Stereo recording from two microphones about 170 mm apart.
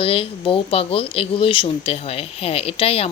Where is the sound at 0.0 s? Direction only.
35° left (ahead or behind).